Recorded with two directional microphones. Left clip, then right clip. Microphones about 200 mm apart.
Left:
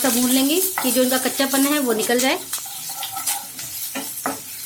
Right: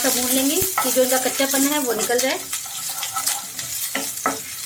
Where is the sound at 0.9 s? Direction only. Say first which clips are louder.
Right 1 dB; 45° left (ahead or behind).